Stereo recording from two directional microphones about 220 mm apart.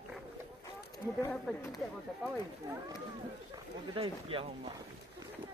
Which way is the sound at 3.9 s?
25° right (ahead or behind).